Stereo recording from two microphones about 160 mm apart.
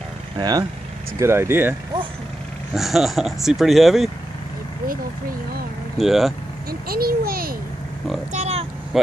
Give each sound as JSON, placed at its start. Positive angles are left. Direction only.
{"t": 0.4, "sound": "speech", "side_deg": -25}
{"t": 1.2, "sound": "speech", "side_deg": -15}
{"t": 2.7, "sound": "speech", "side_deg": 0}
{"t": 5.9, "sound": "speech", "side_deg": 0}
{"t": 6.7, "sound": "a child's voice", "side_deg": -70}
{"t": 8.3, "sound": "speech", "side_deg": -45}
{"t": 8.9, "sound": "speech", "side_deg": 0}